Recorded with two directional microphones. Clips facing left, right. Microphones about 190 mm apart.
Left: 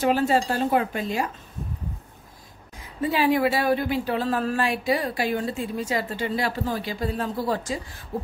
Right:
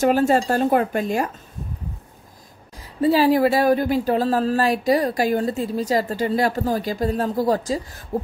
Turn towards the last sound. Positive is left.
turn(degrees=-40)  # may be behind; listen again after turning